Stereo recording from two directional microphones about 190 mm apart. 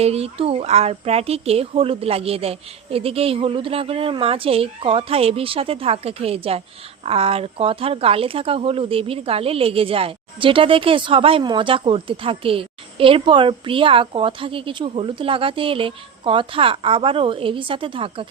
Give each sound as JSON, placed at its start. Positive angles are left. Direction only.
{"t": 0.0, "sound": "speech", "side_deg": -30}